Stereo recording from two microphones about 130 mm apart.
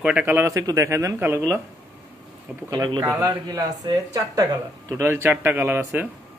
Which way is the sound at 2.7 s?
30° right (ahead or behind).